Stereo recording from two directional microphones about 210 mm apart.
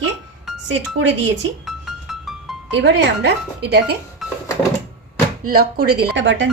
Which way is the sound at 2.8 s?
55° right (ahead or behind).